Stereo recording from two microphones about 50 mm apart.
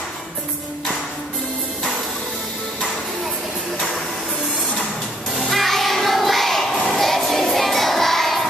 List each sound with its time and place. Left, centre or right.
5.5 s music: centre